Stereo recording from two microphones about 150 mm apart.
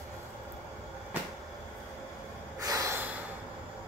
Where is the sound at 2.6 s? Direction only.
20° right (ahead or behind).